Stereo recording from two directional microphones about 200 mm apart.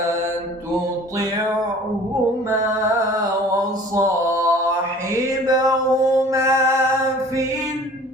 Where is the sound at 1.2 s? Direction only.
15° right (ahead or behind).